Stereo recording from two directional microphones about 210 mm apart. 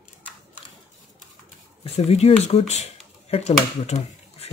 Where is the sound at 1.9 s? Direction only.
30° left (ahead or behind).